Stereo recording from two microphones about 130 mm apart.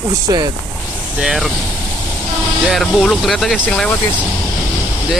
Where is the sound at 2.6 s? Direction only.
5° left (ahead or behind).